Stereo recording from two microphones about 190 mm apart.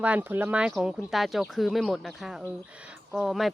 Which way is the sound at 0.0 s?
10° right (ahead or behind).